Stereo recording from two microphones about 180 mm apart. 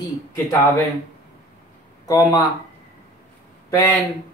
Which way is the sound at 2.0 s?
20° left (ahead or behind).